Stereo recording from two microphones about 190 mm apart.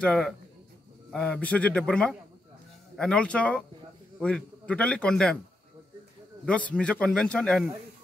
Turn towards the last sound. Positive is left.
turn(degrees=5)  # may be behind; listen again after turning